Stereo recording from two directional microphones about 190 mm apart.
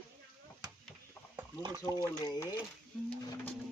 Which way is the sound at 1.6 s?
20° right (ahead or behind).